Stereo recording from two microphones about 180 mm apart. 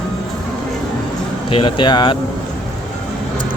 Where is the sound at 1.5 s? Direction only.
30° left (ahead or behind).